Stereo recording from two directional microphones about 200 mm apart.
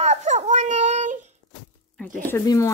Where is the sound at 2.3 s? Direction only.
15° left (ahead or behind).